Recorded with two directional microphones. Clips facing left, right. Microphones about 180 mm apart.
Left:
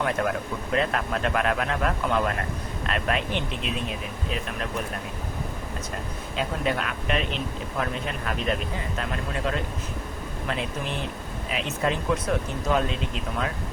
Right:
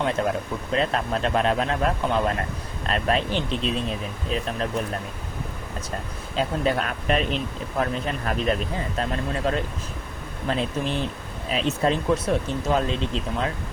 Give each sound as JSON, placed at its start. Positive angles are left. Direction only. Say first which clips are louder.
{"t": 0.2, "sound": "speech", "louder": "right 2 dB", "side_deg": -25}
{"t": 6.3, "sound": "speech", "louder": "right 4 dB", "side_deg": -35}